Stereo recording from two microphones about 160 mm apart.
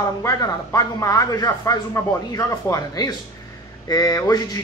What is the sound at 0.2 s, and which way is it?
Speech, 20° left (ahead or behind).